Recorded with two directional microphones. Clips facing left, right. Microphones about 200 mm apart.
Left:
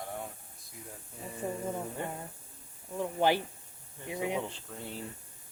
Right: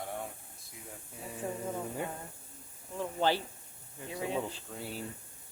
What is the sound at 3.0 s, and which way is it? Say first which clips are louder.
Speech: left 2 dB; 15° left (ahead or behind).